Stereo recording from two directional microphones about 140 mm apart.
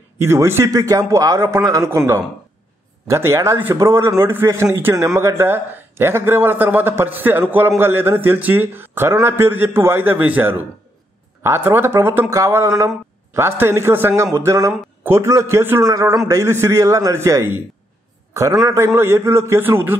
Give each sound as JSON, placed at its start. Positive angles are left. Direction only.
{"t": 0.2, "sound": "speech", "side_deg": -20}